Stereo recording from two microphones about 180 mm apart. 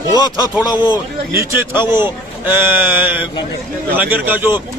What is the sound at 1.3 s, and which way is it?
A man's voice, 15° right (ahead or behind).